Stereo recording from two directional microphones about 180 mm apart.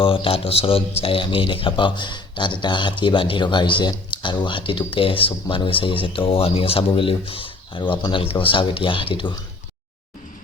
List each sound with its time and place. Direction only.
0.0 s speech: 30° left (ahead or behind)